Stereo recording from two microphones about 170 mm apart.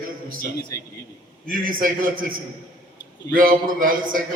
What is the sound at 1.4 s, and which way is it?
Speech, 55° right (ahead or behind).